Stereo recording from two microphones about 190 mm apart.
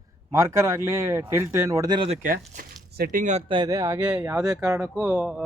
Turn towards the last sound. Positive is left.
turn(degrees=-5)  # may be behind; listen again after turning